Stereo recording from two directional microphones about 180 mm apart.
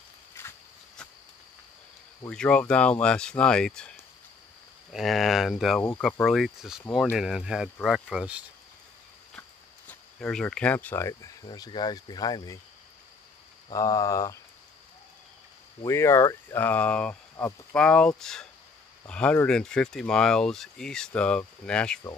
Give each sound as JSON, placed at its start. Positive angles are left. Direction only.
{"t": 0.3, "sound": "walk", "side_deg": 15}
{"t": 2.2, "sound": "speech", "side_deg": 5}
{"t": 9.8, "sound": "speech", "side_deg": 5}
{"t": 13.7, "sound": "speech", "side_deg": 20}
{"t": 15.8, "sound": "speech", "side_deg": 15}